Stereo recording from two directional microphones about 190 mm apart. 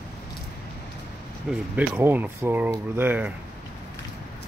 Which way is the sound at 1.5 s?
10° right (ahead or behind).